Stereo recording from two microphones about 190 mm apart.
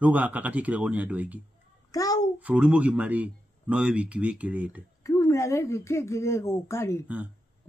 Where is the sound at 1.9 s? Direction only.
20° left (ahead or behind).